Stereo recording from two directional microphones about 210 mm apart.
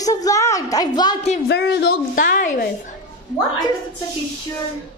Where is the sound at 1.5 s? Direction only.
50° left (ahead or behind).